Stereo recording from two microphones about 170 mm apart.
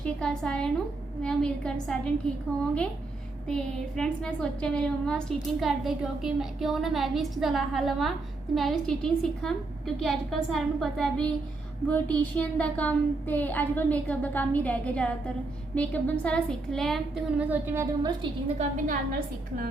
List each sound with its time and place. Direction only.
0.0 s a woman's voice: 5° left (ahead or behind)
3.4 s a woman's voice: 5° left (ahead or behind)
18.0 s a woman's voice: 30° right (ahead or behind)
18.9 s a woman's voice: 55° right (ahead or behind)